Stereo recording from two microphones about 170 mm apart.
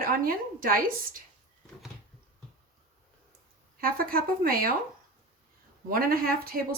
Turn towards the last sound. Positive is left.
turn(degrees=-60)  # may be behind; listen again after turning